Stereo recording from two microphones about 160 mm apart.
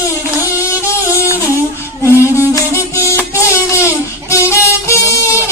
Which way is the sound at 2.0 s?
15° left (ahead or behind).